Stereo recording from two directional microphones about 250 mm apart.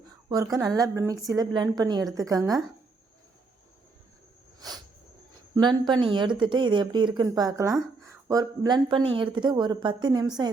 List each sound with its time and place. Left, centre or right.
0.5 s speech: centre
5.5 s speech: centre